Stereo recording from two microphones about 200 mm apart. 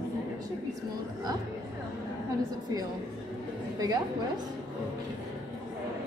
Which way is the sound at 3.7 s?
20° right (ahead or behind).